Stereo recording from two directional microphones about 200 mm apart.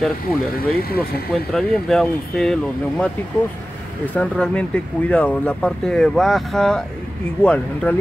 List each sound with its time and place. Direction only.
0.5 s speech: 50° left (ahead or behind)
1.3 s speech: centre (ahead or behind)